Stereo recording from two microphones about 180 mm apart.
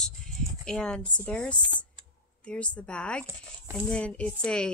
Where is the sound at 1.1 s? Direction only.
5° left (ahead or behind).